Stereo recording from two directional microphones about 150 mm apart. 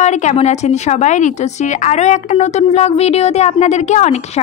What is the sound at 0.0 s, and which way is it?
A woman's voice, 50° left (ahead or behind).